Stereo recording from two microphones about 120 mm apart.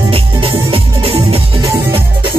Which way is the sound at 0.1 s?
50° right (ahead or behind).